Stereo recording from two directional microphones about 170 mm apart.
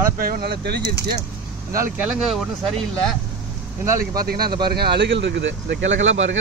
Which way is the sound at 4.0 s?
60° right (ahead or behind).